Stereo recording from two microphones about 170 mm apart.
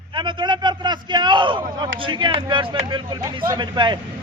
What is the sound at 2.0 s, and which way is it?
A man's voice, 30° right (ahead or behind).